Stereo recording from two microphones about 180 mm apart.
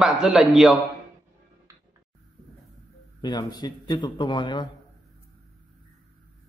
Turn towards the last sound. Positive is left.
turn(degrees=25)  # may be behind; listen again after turning